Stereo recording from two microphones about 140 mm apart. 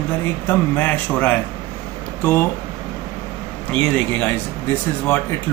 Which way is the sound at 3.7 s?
5° left (ahead or behind).